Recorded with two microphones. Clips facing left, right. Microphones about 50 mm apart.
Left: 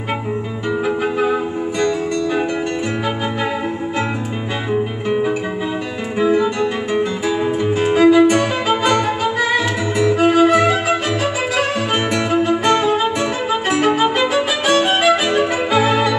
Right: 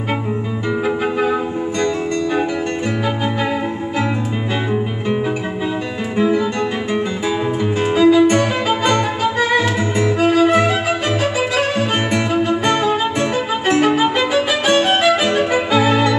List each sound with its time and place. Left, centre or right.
1.2 s music: centre
6.1 s music: centre
8.0 s music: centre
8.3 s music: centre
10.1 s music: centre
10.5 s music: centre
12.1 s music: centre